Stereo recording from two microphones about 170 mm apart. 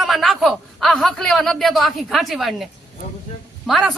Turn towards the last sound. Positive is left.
turn(degrees=0)  # may be behind; listen again after turning